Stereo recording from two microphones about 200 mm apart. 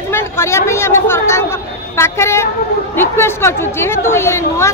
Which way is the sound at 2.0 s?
15° left (ahead or behind).